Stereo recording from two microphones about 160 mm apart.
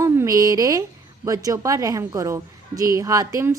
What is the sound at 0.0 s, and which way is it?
A woman's voice, 20° right (ahead or behind).